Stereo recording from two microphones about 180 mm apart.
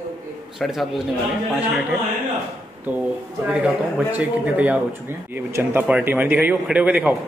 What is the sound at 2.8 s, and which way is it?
A man's voice, 10° right (ahead or behind).